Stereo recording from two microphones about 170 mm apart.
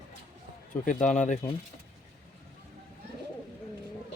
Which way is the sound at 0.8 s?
50° left (ahead or behind).